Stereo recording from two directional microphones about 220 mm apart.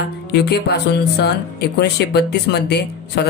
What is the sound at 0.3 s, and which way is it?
Speech, 50° left (ahead or behind).